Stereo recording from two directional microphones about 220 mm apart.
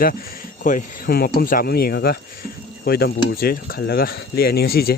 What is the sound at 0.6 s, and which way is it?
Speech, 40° left (ahead or behind).